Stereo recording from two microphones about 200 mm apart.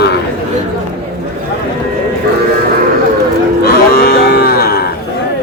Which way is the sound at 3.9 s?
50° left (ahead or behind).